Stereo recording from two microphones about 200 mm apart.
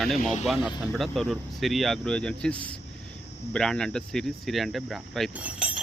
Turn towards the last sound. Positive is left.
turn(degrees=-5)  # may be behind; listen again after turning